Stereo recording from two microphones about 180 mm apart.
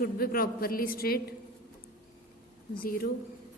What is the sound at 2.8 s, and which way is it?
Speech, 55° left (ahead or behind).